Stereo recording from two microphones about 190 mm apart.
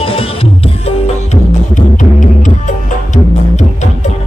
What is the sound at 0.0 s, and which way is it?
Music, 30° left (ahead or behind).